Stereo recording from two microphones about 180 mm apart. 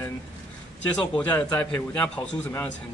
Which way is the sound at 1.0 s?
10° left (ahead or behind).